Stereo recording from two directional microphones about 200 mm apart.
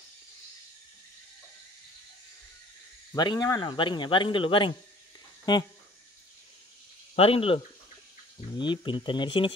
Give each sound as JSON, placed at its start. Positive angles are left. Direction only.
{"t": 3.1, "sound": "speech", "side_deg": 20}
{"t": 7.2, "sound": "speech", "side_deg": 30}